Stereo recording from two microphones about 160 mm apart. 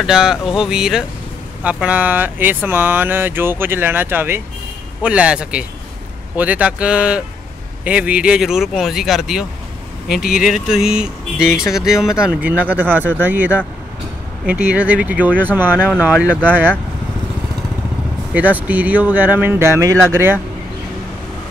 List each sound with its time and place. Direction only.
0.0 s speech: 5° right (ahead or behind)
10.5 s speech: 5° right (ahead or behind)
14.7 s speech: 10° right (ahead or behind)
18.3 s speech: 10° right (ahead or behind)